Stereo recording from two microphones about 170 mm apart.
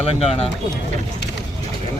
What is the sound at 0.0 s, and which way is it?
Speech, 35° left (ahead or behind).